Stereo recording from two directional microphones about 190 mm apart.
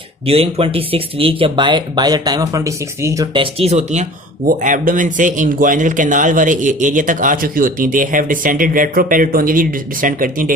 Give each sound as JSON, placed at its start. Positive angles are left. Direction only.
{"t": 0.3, "sound": "speech", "side_deg": -30}
{"t": 3.3, "sound": "speech", "side_deg": -30}